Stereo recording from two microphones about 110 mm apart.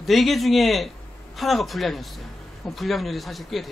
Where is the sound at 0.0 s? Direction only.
Centre (ahead or behind).